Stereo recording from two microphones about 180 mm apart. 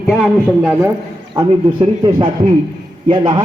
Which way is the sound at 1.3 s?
25° right (ahead or behind).